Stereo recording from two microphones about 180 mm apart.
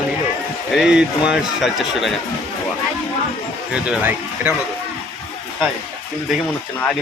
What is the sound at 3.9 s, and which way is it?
Speech, 10° right (ahead or behind).